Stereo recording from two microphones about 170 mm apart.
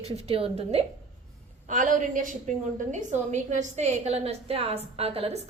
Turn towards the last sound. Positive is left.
turn(degrees=-35)  # may be behind; listen again after turning